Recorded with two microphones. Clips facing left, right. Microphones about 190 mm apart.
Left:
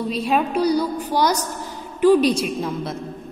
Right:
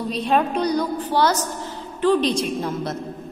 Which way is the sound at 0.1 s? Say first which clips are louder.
Right 1 dB; 5° left (ahead or behind).